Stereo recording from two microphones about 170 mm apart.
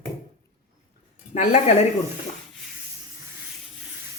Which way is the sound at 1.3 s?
45° left (ahead or behind).